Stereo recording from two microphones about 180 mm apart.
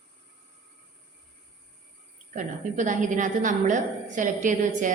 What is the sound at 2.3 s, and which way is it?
A woman's voice, 45° right (ahead or behind).